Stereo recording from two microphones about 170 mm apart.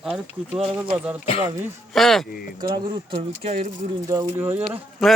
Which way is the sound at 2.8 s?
30° right (ahead or behind).